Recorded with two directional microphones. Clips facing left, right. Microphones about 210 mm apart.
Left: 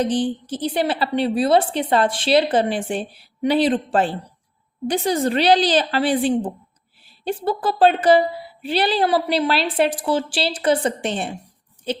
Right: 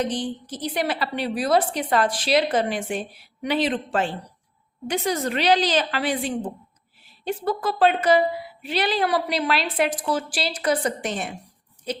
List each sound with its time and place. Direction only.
0.0 s a woman's voice: 30° left (ahead or behind)